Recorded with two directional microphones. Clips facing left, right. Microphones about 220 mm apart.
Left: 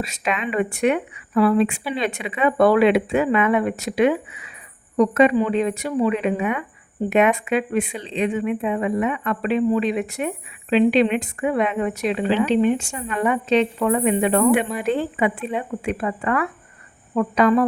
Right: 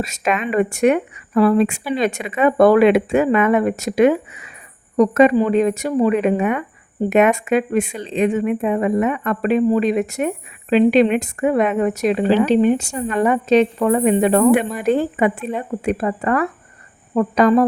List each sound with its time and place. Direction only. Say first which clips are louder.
0.0 s speech: right 4 dB; 45° right (ahead or behind)